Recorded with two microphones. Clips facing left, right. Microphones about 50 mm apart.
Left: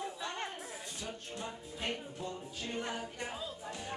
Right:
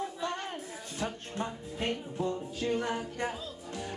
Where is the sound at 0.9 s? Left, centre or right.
Right.